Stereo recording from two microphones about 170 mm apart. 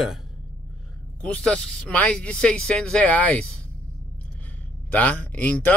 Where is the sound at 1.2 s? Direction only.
5° left (ahead or behind).